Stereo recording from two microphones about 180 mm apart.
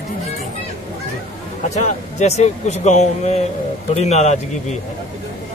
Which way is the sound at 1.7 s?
40° left (ahead or behind).